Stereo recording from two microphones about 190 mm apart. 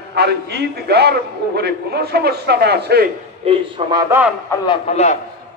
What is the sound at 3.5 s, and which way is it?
Speech, 20° right (ahead or behind).